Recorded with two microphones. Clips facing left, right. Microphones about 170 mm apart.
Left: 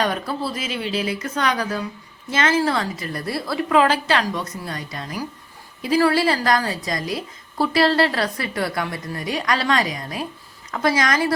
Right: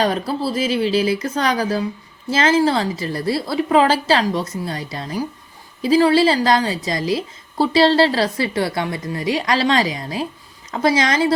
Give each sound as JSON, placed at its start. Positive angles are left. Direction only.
{"t": 0.0, "sound": "a woman's voice", "side_deg": -30}